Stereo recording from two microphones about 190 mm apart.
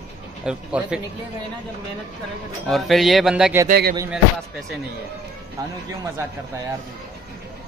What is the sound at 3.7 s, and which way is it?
Music, 55° right (ahead or behind).